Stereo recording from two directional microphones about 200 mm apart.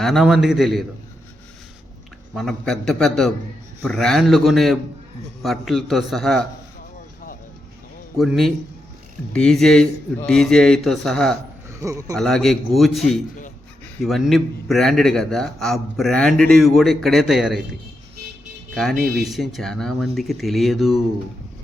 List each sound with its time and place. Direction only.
0.0 s a man's voice: centre (ahead or behind)
2.3 s a man's voice: centre (ahead or behind)
8.2 s a man's voice: centre (ahead or behind)
11.7 s a man's voice: 15° right (ahead or behind)
12.1 s a man's voice: centre (ahead or behind)
18.7 s a man's voice: centre (ahead or behind)